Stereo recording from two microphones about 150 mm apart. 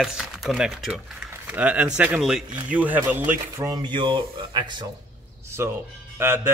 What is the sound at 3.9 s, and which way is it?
Speech, 30° right (ahead or behind).